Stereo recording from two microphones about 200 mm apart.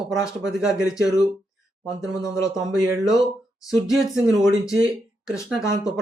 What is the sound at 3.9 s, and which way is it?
Speech, centre (ahead or behind).